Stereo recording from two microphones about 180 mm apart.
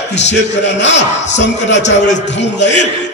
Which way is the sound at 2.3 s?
75° left (ahead or behind).